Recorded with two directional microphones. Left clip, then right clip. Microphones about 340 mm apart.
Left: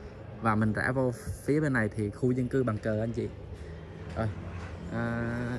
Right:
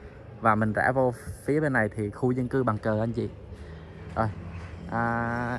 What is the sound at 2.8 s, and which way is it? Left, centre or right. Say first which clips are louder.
Speech: right 4 dB; right.